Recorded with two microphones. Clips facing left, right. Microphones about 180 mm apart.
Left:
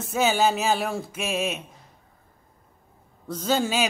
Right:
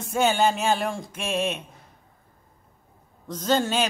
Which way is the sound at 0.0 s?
Centre (ahead or behind).